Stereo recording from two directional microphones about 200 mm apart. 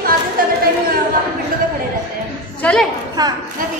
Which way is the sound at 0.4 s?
45° right (ahead or behind).